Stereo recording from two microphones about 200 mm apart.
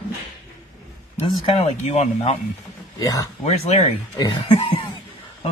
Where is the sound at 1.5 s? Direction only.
30° left (ahead or behind).